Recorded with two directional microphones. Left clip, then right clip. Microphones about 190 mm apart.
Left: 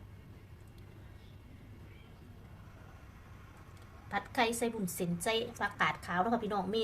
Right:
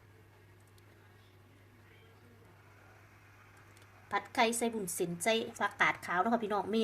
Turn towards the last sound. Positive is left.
turn(degrees=-30)  # may be behind; listen again after turning